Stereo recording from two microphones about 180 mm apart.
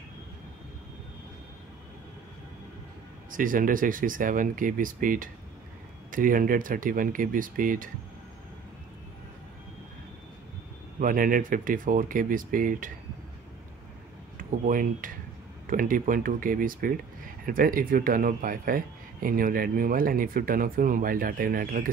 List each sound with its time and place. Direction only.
3.3 s speech: 50° right (ahead or behind)
11.0 s speech: 50° right (ahead or behind)
14.3 s speech: 50° right (ahead or behind)